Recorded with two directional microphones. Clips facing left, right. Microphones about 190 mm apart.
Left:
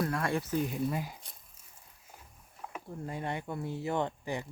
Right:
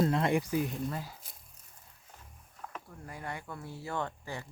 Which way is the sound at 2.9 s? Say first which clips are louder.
Left 7 dB; 25° left (ahead or behind).